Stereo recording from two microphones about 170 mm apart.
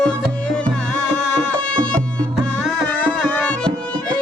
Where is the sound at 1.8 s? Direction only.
30° right (ahead or behind).